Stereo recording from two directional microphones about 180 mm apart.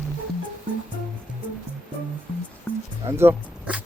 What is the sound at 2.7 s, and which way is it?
Music, 10° left (ahead or behind).